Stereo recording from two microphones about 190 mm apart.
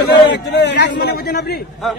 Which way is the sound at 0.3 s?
65° left (ahead or behind).